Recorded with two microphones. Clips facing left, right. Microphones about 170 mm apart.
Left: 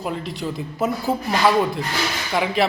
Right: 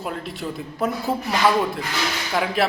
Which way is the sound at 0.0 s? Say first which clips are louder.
Left 2 dB; centre (ahead or behind).